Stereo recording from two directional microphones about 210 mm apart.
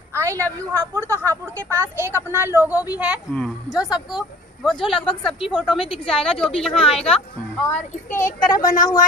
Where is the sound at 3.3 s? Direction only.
Centre (ahead or behind).